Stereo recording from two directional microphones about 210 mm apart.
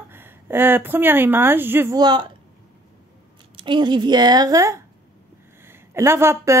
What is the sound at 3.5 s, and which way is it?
A woman's voice, 20° right (ahead or behind).